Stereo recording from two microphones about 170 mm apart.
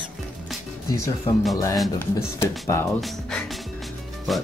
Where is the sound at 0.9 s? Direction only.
20° left (ahead or behind).